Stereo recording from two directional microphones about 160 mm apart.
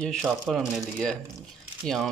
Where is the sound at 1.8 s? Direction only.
Centre (ahead or behind).